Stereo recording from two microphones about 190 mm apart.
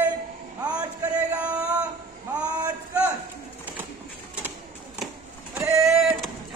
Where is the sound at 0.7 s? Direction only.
5° right (ahead or behind).